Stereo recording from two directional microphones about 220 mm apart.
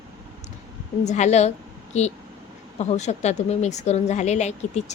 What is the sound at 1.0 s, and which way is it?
A woman's voice, 30° left (ahead or behind).